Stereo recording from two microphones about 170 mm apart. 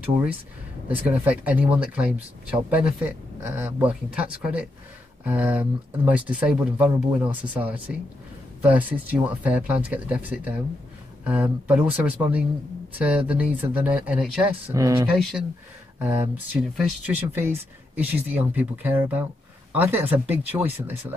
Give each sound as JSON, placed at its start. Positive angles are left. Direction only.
{"t": 0.0, "sound": "speech", "side_deg": -10}
{"t": 14.7, "sound": "speech", "side_deg": -20}